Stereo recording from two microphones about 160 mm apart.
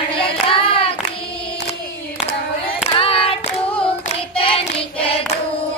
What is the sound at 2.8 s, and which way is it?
Singing, 35° left (ahead or behind).